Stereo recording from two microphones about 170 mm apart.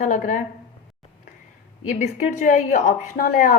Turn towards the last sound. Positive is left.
turn(degrees=55)  # may be behind; listen again after turning